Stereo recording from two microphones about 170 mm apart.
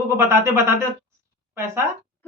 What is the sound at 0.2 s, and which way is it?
Speech, 15° right (ahead or behind).